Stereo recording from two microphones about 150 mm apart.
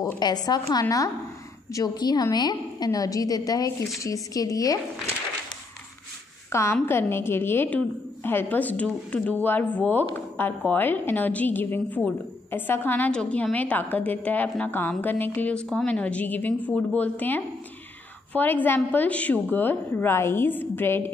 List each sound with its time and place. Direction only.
0.0 s a woman's voice: 25° left (ahead or behind)
6.5 s a woman's voice: 15° left (ahead or behind)